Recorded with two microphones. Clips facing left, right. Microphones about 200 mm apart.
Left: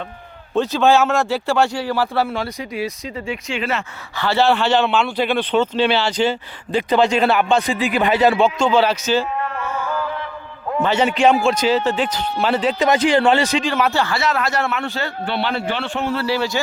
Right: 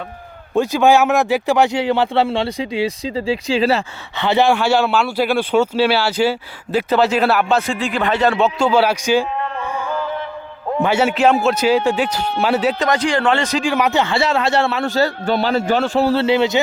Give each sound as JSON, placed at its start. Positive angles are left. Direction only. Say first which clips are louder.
{"t": 0.5, "sound": "a man's voice", "louder": "right 2 dB", "side_deg": -15}
{"t": 8.5, "sound": "a man's voice", "louder": "right 1 dB", "side_deg": -5}
{"t": 9.6, "sound": "a sound", "louder": "right 1 dB", "side_deg": -15}
{"t": 10.8, "sound": "a man's voice", "louder": "right 1 dB", "side_deg": -10}
{"t": 12.8, "sound": "speech", "louder": "left 2 dB", "side_deg": 20}
{"t": 13.5, "sound": "a man's voice", "louder": "right 2 dB", "side_deg": -10}
{"t": 14.8, "sound": "a man's voice", "louder": "right 7 dB", "side_deg": -40}
{"t": 16.2, "sound": "a man's voice", "louder": "right 5 dB", "side_deg": -20}